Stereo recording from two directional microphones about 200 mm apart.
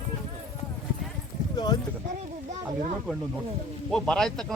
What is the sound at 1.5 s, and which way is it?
Clip-clop, 20° left (ahead or behind).